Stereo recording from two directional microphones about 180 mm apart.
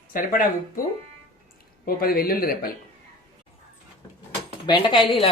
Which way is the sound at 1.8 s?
55° left (ahead or behind).